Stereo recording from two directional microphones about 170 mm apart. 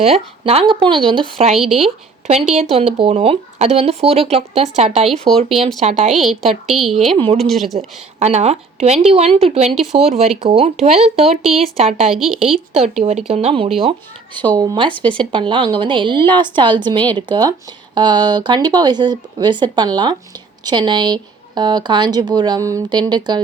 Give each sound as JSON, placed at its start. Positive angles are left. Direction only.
{"t": 0.0, "sound": "speech", "side_deg": -35}
{"t": 1.5, "sound": "a woman's voice", "side_deg": 0}
{"t": 2.5, "sound": "speech", "side_deg": -35}
{"t": 5.3, "sound": "speech", "side_deg": -25}
{"t": 5.8, "sound": "speech", "side_deg": -40}
{"t": 6.1, "sound": "a woman's voice", "side_deg": 0}
{"t": 7.8, "sound": "speech", "side_deg": -40}
{"t": 9.7, "sound": "a woman's voice", "side_deg": 0}
{"t": 10.6, "sound": "speech", "side_deg": -40}
{"t": 11.4, "sound": "a woman's voice", "side_deg": 0}
{"t": 11.8, "sound": "speech", "side_deg": -35}
{"t": 12.0, "sound": "a woman's voice", "side_deg": 0}
{"t": 12.5, "sound": "speech", "side_deg": -40}